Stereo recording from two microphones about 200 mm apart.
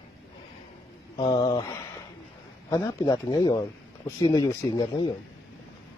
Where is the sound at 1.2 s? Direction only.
25° left (ahead or behind).